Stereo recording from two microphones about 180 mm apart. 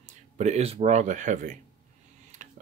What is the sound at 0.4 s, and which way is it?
Speech, 35° right (ahead or behind).